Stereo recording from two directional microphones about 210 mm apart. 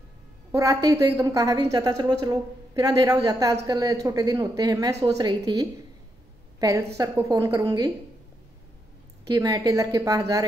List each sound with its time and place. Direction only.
0.5 s a woman's voice: 15° right (ahead or behind)
7.0 s a woman's voice: 15° right (ahead or behind)
9.3 s a woman's voice: 15° right (ahead or behind)